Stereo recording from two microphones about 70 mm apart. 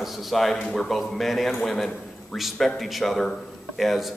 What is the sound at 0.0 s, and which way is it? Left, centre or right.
A man's voice, centre.